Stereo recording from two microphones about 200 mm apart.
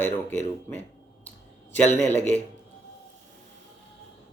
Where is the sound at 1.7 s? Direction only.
10° left (ahead or behind).